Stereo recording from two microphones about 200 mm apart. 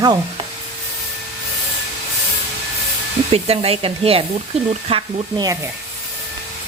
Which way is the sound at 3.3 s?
30° right (ahead or behind).